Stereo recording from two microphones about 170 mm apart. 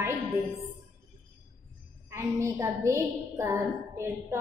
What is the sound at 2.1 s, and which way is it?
A woman's voice, 15° right (ahead or behind).